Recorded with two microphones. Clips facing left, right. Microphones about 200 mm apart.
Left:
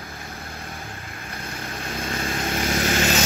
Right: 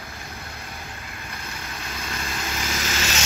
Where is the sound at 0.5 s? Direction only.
50° left (ahead or behind).